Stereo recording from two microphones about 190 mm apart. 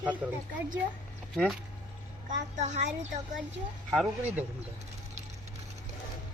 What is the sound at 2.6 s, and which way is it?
Speech, 40° right (ahead or behind).